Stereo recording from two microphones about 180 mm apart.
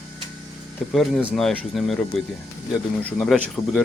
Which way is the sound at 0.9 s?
Centre (ahead or behind).